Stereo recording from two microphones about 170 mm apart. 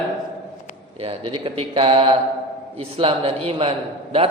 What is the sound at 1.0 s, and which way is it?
A man's voice, 35° right (ahead or behind).